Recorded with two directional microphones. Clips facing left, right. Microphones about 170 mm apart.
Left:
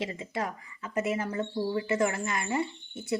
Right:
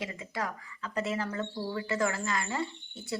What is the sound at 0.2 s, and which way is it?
Speech, 20° left (ahead or behind).